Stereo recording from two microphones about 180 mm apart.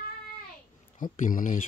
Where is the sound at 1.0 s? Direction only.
50° left (ahead or behind).